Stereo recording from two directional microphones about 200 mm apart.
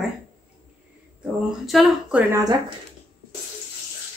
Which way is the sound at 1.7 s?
Centre (ahead or behind).